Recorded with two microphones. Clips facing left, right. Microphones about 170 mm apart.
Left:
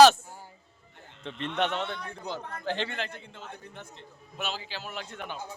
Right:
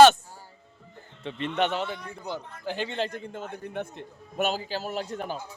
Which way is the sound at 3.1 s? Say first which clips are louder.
Right 8 dB; 45° right (ahead or behind).